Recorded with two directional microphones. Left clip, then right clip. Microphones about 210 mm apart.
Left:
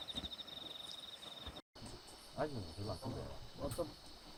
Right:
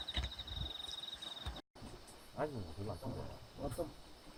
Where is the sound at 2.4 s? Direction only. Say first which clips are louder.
Right 1 dB; 35° right (ahead or behind).